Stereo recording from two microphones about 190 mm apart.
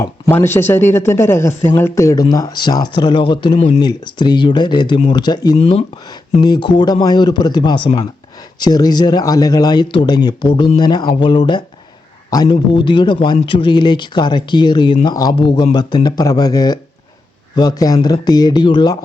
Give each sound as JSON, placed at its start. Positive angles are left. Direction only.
{"t": 0.0, "sound": "speech", "side_deg": 10}